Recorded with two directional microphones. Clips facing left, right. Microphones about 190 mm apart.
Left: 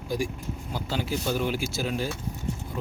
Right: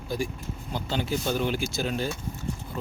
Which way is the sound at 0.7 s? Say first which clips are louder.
Right 1 dB; 5° left (ahead or behind).